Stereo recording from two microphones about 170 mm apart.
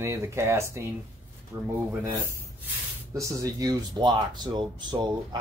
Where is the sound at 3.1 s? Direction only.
20° right (ahead or behind).